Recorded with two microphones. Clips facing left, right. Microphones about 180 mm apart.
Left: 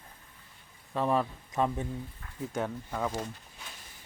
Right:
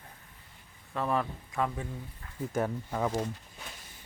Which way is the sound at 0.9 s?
15° left (ahead or behind).